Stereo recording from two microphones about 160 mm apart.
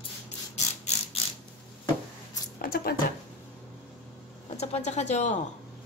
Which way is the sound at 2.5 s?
65° left (ahead or behind).